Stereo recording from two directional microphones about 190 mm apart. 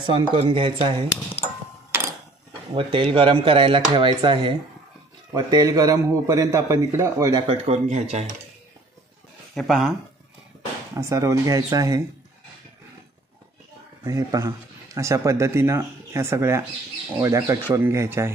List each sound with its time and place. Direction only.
0.0 s speech: 25° right (ahead or behind)
2.7 s a man's voice: 25° right (ahead or behind)
7.6 s speech: 35° right (ahead or behind)
9.6 s speech: centre (ahead or behind)
11.0 s a man's voice: 15° right (ahead or behind)
14.0 s a man's voice: 15° right (ahead or behind)